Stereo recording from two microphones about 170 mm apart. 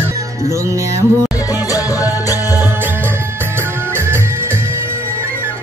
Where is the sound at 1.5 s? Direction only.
20° left (ahead or behind).